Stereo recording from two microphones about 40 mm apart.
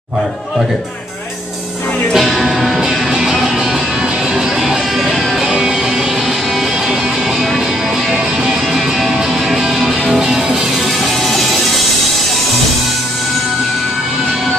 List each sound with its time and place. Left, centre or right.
2.1 s music: centre
2.8 s music: centre
4.4 s music: centre
8.1 s music: centre